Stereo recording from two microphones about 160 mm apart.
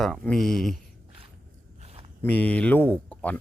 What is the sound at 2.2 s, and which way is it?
Speech, 10° left (ahead or behind).